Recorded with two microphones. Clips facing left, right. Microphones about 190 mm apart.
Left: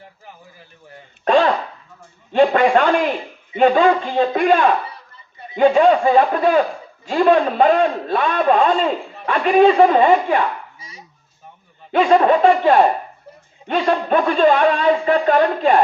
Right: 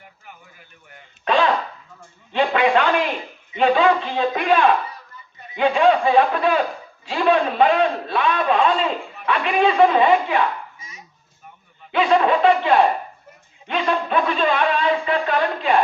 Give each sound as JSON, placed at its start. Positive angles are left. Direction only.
{"t": 1.2, "sound": "a sound", "side_deg": 45}
{"t": 2.3, "sound": "a man's voice", "side_deg": 45}
{"t": 11.9, "sound": "a man's voice", "side_deg": 45}